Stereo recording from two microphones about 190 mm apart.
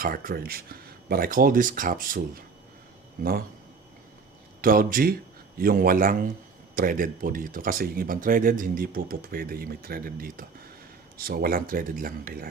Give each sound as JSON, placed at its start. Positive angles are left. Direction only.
{"t": 0.0, "sound": "speech", "side_deg": -50}
{"t": 4.6, "sound": "speech", "side_deg": -50}